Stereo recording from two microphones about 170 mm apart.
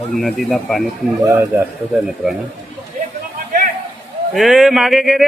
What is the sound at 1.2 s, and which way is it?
Speech, 15° right (ahead or behind).